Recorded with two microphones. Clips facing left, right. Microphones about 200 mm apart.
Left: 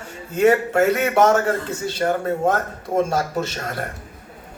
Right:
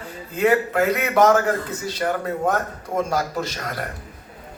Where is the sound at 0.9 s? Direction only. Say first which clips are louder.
Even; 25° left (ahead or behind).